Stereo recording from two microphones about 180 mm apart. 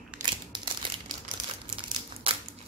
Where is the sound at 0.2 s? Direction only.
25° right (ahead or behind).